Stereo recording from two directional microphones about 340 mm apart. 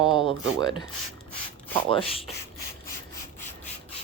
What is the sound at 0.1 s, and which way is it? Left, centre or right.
Speech, centre.